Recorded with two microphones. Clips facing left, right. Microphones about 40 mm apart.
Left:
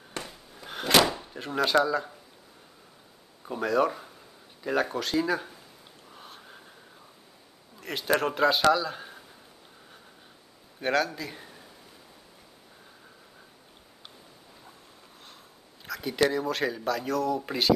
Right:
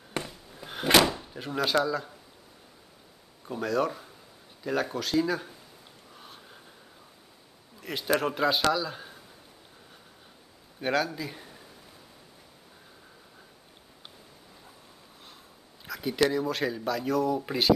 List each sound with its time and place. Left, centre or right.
0.2 s a sound: centre
1.0 s speech: centre
3.4 s speech: centre
6.1 s a sound: centre
7.8 s speech: centre
10.8 s speech: centre
15.8 s speech: centre